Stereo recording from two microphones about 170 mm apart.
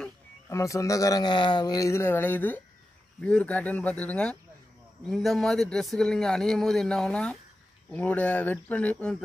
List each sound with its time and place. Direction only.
0.5 s a man's voice: 20° left (ahead or behind)